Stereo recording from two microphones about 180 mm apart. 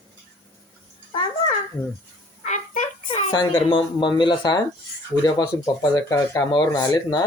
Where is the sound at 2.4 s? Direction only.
40° left (ahead or behind).